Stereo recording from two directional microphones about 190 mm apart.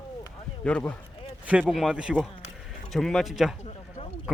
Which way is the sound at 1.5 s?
5° right (ahead or behind).